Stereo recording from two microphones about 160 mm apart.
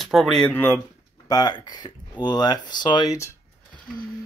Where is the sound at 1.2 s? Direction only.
25° left (ahead or behind).